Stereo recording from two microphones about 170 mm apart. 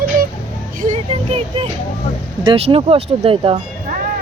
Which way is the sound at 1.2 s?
35° right (ahead or behind).